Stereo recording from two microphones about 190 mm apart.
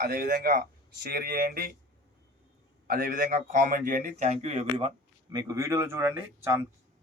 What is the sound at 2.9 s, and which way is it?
Speech, 50° right (ahead or behind).